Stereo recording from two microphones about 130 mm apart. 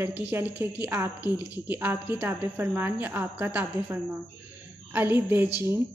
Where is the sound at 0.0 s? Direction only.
15° right (ahead or behind).